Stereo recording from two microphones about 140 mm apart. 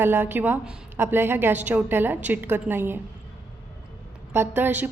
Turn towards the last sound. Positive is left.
turn(degrees=-15)  # may be behind; listen again after turning